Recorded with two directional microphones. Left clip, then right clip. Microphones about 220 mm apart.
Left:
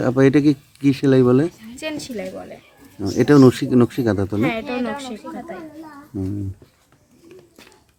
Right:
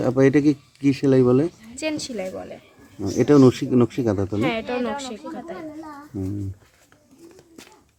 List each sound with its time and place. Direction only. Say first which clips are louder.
0.0 s speech: left 2 dB; 10° left (ahead or behind)
1.7 s a woman's voice: right 1 dB; 15° right (ahead or behind)
3.0 s speech: left 2 dB; 10° left (ahead or behind)
4.4 s a woman's voice: left 2 dB; 15° right (ahead or behind)
6.1 s speech: left 3 dB; 10° left (ahead or behind)